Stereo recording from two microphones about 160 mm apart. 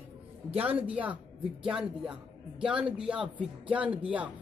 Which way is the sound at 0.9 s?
10° right (ahead or behind).